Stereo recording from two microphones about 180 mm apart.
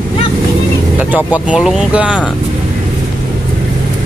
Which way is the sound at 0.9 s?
10° right (ahead or behind).